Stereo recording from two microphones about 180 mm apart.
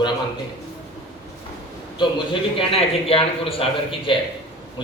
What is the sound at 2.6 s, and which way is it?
A man's voice, 30° left (ahead or behind).